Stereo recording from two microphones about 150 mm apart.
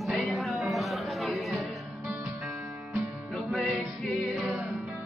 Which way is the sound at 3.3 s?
Centre (ahead or behind).